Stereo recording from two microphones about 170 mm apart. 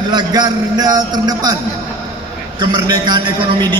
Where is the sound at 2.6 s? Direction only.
25° right (ahead or behind).